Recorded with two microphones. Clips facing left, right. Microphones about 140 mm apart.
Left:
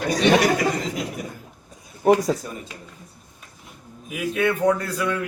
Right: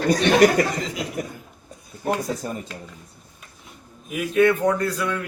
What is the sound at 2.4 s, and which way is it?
Speech, 45° right (ahead or behind).